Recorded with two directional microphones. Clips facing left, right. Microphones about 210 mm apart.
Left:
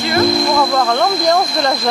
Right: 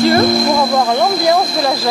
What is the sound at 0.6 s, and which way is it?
Speech, 15° right (ahead or behind).